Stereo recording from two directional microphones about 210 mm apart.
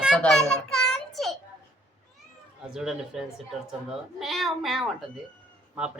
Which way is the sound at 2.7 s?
Centre (ahead or behind).